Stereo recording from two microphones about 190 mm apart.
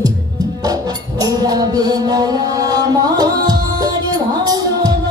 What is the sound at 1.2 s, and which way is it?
Music, 20° right (ahead or behind).